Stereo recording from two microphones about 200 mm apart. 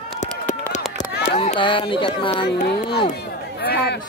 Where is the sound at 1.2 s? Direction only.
30° left (ahead or behind).